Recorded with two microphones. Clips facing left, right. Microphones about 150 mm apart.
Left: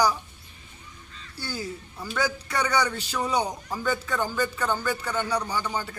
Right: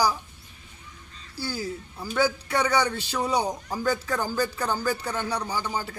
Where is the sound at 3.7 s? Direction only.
35° right (ahead or behind).